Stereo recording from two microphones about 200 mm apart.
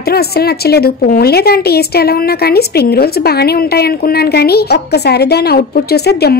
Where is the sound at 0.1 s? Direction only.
50° left (ahead or behind).